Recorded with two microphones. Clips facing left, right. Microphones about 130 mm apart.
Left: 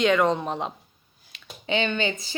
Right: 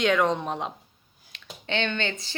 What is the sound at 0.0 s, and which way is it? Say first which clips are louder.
A woman's voice: left 2 dB; centre (ahead or behind).